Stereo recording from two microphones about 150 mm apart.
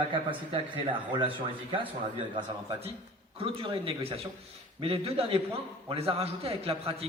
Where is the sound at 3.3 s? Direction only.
40° right (ahead or behind).